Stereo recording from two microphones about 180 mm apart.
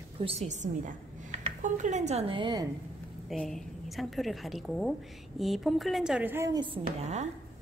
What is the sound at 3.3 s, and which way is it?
A woman's voice, centre (ahead or behind).